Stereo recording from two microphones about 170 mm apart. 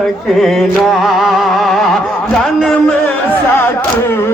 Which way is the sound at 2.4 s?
5° left (ahead or behind).